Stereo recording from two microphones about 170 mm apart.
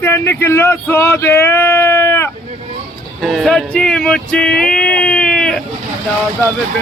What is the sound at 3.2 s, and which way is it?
Speech, centre (ahead or behind).